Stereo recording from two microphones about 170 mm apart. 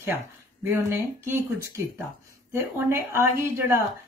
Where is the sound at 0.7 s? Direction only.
15° right (ahead or behind).